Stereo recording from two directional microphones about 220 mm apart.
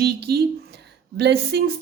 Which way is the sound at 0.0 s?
45° right (ahead or behind).